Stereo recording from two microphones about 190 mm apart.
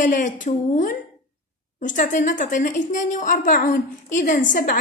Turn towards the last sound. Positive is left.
turn(degrees=45)  # may be behind; listen again after turning